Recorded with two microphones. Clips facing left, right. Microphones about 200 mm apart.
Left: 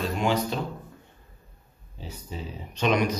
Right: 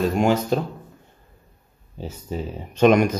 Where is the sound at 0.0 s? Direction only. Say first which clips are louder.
Right 6 dB; 45° right (ahead or behind).